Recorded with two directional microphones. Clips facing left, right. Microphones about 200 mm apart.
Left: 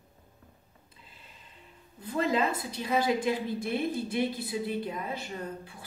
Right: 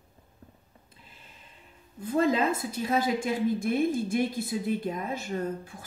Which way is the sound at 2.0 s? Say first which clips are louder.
Right 3 dB; 45° right (ahead or behind).